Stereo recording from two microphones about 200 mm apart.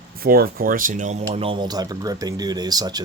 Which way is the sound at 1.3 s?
25° right (ahead or behind).